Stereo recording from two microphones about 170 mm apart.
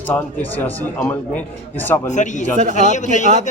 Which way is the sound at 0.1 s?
10° left (ahead or behind).